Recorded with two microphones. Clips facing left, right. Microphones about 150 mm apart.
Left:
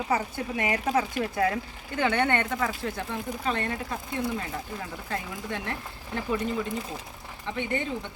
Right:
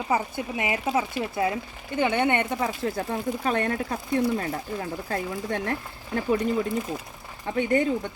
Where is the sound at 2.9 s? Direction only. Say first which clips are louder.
Right 5 dB; 40° right (ahead or behind).